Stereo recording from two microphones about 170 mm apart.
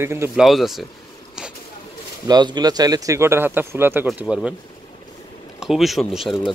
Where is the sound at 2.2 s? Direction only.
25° right (ahead or behind); by 4.5 s 5° right (ahead or behind).